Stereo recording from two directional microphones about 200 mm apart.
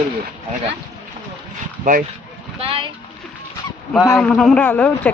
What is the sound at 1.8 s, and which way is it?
Speech, 45° right (ahead or behind).